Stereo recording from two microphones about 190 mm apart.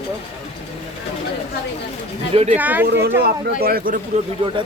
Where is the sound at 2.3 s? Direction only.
35° right (ahead or behind).